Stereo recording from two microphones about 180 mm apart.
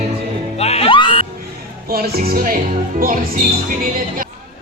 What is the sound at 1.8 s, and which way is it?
Speech, 60° right (ahead or behind).